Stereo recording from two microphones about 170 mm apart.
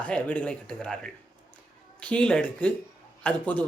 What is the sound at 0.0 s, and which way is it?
Speech, 10° left (ahead or behind).